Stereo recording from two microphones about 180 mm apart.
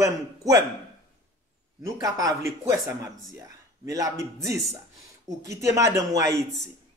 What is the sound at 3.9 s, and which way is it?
Speech, 20° right (ahead or behind).